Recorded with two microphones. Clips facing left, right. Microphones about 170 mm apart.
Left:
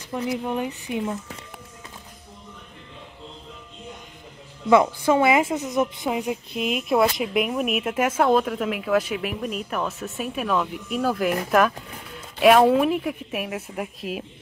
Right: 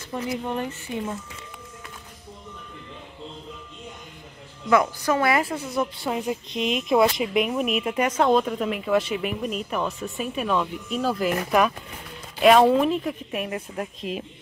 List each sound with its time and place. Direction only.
0.1 s speech: 5° left (ahead or behind)
0.7 s speech: 15° left (ahead or behind)
4.6 s a woman's voice: 25° left (ahead or behind)
6.0 s speech: 5° left (ahead or behind)